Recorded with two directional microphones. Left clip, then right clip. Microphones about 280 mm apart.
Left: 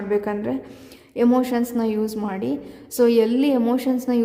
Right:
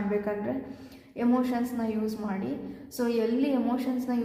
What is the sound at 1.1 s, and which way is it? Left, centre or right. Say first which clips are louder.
A woman's voice: left 8 dB; left.